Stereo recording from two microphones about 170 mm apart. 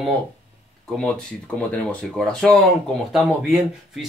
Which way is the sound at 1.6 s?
5° left (ahead or behind).